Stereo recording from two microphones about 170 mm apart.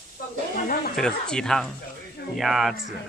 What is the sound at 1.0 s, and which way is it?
Speech, 5° left (ahead or behind).